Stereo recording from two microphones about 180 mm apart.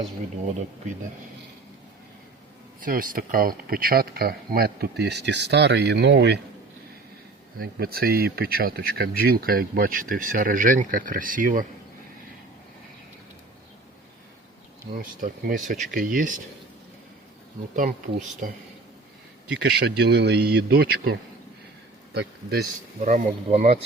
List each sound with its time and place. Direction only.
2.8 s speech: 50° right (ahead or behind); by 6.4 s 70° right (ahead or behind)
7.6 s speech: 55° right (ahead or behind)
14.9 s speech: 50° right (ahead or behind)
17.7 s speech: 50° right (ahead or behind)
19.8 s speech: 70° right (ahead or behind)
23.0 s speech: 40° right (ahead or behind)